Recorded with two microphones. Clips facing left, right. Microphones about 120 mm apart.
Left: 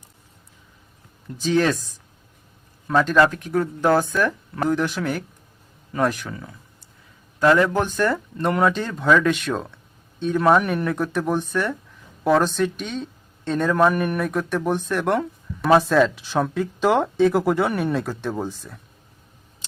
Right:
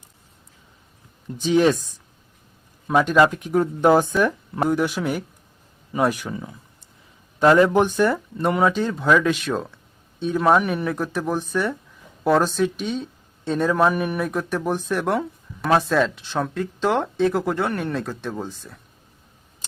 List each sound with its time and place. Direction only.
1.4 s speech: 15° right (ahead or behind)